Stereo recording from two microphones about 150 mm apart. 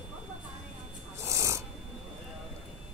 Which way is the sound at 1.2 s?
20° right (ahead or behind).